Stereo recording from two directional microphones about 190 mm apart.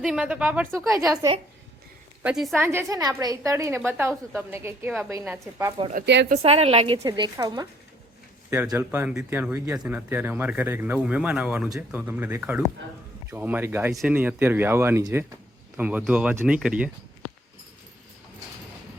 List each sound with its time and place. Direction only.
0.0 s speech: 5° right (ahead or behind)
2.2 s speech: centre (ahead or behind)
2.6 s speech: 15° right (ahead or behind)
6.2 s a woman's voice: 35° right (ahead or behind); by 16.9 s 5° right (ahead or behind)